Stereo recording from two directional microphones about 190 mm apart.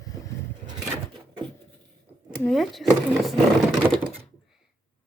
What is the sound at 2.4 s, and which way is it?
Speech, centre (ahead or behind).